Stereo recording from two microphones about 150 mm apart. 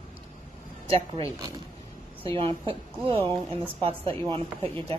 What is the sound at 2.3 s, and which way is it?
Speech, 35° right (ahead or behind).